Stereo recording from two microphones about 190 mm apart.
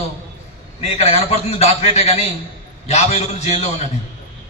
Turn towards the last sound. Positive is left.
turn(degrees=35)  # may be behind; listen again after turning